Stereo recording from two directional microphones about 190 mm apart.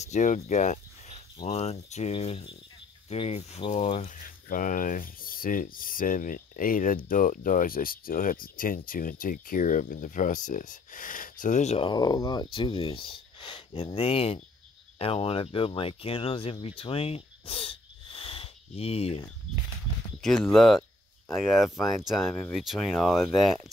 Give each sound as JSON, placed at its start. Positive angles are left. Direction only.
{"t": 0.0, "sound": "speech", "side_deg": 40}
{"t": 20.2, "sound": "speech", "side_deg": 0}